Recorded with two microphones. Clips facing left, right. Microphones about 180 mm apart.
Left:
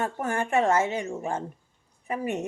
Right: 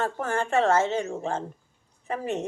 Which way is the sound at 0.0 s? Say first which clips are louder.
Right 1 dB; 15° left (ahead or behind).